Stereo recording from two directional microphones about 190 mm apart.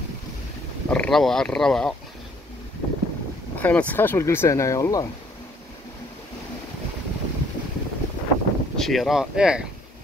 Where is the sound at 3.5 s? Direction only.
10° left (ahead or behind).